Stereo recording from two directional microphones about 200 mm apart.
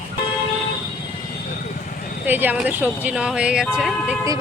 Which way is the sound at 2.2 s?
10° right (ahead or behind).